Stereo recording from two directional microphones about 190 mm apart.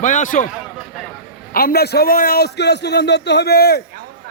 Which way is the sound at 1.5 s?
55° left (ahead or behind).